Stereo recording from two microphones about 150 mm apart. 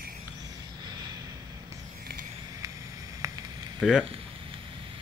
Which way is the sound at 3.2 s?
25° right (ahead or behind).